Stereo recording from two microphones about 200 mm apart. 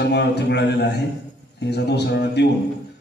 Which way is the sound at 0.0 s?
55° left (ahead or behind).